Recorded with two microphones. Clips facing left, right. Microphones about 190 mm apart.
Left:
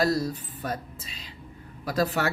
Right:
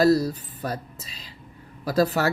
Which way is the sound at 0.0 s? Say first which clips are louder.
Right 6 dB; 40° right (ahead or behind).